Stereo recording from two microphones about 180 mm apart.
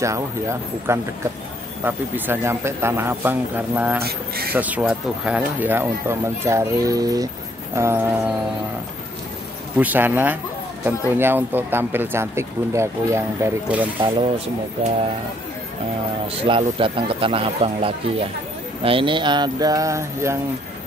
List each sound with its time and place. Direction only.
0.0 s speech: 15° right (ahead or behind)
4.0 s a sound: 60° right (ahead or behind)
4.6 s speech: 10° right (ahead or behind)
9.8 s speech: 10° right (ahead or behind)
14.0 s speech: 30° right (ahead or behind)
16.3 s speech: 30° right (ahead or behind)